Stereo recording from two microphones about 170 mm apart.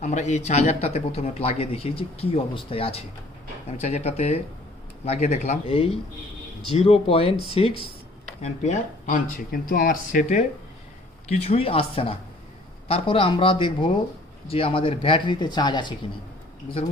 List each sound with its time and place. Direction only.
0.0 s speech: 45° left (ahead or behind)
11.3 s speech: 40° left (ahead or behind)